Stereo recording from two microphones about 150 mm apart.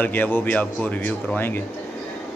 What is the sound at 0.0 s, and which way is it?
Speech, 10° left (ahead or behind).